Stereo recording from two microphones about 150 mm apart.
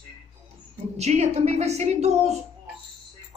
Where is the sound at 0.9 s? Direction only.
45° right (ahead or behind).